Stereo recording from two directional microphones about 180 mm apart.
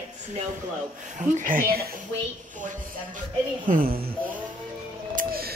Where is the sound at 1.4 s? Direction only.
50° right (ahead or behind).